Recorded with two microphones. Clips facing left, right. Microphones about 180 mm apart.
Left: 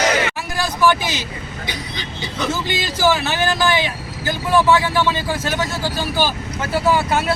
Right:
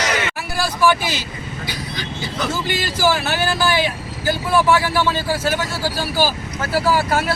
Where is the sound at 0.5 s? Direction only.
10° right (ahead or behind).